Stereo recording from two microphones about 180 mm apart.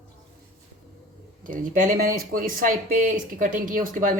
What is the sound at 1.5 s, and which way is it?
Speech, 50° right (ahead or behind).